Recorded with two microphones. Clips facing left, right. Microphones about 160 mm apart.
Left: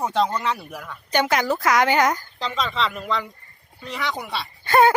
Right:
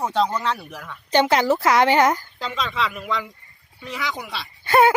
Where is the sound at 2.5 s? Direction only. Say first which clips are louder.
Left 1 dB; 5° right (ahead or behind).